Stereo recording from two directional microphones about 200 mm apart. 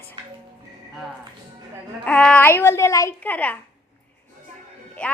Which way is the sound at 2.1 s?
5° left (ahead or behind).